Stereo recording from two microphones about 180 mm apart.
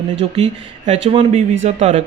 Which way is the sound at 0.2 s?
30° right (ahead or behind).